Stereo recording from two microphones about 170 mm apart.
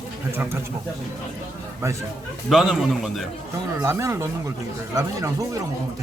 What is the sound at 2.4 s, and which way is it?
Speech, centre (ahead or behind).